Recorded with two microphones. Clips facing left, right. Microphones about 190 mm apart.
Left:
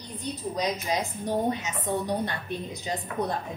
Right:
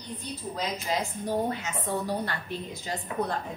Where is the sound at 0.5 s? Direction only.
20° left (ahead or behind).